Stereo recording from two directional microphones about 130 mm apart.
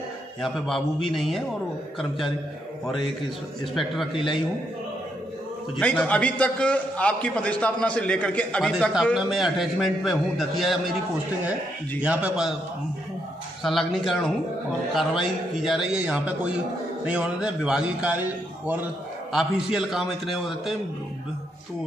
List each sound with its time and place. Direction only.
0.4 s a man's voice: centre (ahead or behind)
3.7 s a man's voice: centre (ahead or behind)
5.8 s a man's voice: 10° left (ahead or behind)
12.0 s speech: 10° right (ahead or behind)
13.6 s a man's voice: centre (ahead or behind)
19.3 s a man's voice: 5° right (ahead or behind)